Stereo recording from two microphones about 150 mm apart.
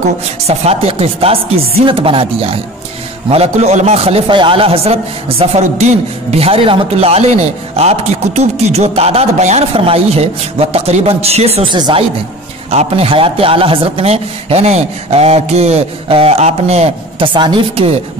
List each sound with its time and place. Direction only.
0.5 s chopping: 40° right (ahead or behind)
3.3 s a man's voice: 45° right (ahead or behind)